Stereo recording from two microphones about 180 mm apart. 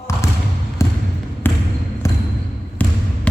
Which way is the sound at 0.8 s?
15° left (ahead or behind).